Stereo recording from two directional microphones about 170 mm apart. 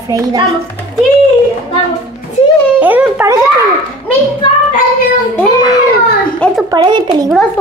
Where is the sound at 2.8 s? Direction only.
10° right (ahead or behind).